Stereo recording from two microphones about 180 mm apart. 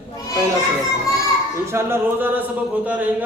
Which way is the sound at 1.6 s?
15° right (ahead or behind).